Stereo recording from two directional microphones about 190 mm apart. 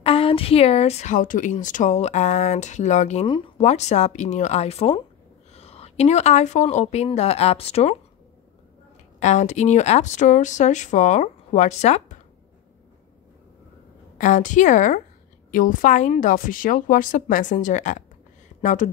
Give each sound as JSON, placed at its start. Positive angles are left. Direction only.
{"t": 0.0, "sound": "a woman's voice", "side_deg": 30}
{"t": 9.2, "sound": "a woman's voice", "side_deg": 40}
{"t": 14.1, "sound": "a woman's voice", "side_deg": 40}